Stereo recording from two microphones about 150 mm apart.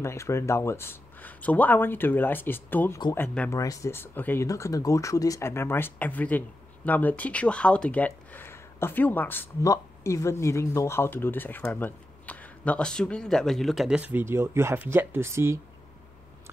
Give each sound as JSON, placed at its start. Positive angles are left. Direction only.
{"t": 0.0, "sound": "speech", "side_deg": 20}